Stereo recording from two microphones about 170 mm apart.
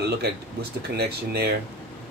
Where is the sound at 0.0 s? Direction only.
70° right (ahead or behind).